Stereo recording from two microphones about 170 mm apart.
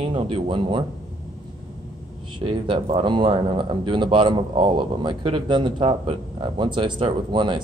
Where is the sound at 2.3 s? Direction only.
30° right (ahead or behind).